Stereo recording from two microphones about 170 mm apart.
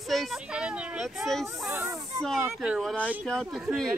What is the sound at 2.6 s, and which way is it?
Speech, centre (ahead or behind).